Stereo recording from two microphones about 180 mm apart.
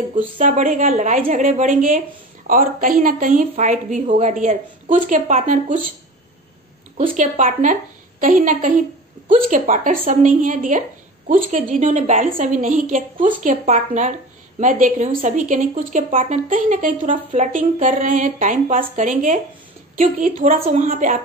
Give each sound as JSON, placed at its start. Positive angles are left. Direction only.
{"t": 0.4, "sound": "a woman's voice", "side_deg": -45}
{"t": 7.1, "sound": "a woman's voice", "side_deg": -45}
{"t": 16.1, "sound": "a woman's voice", "side_deg": -35}
{"t": 16.4, "sound": "a woman's voice", "side_deg": -45}